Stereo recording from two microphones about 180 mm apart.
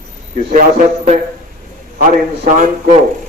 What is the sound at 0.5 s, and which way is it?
A man's voice, 45° right (ahead or behind).